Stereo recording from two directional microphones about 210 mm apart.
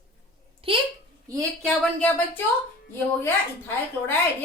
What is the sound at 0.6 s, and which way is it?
Speech, 25° right (ahead or behind).